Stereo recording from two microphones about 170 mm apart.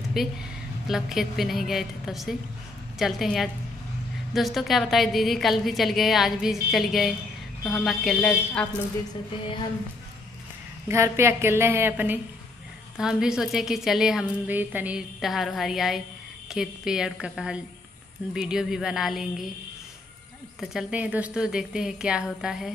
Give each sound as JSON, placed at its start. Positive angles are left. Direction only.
{"t": 0.2, "sound": "a woman's voice", "side_deg": 0}
{"t": 10.9, "sound": "a woman's voice", "side_deg": -15}
{"t": 20.6, "sound": "a woman's voice", "side_deg": -5}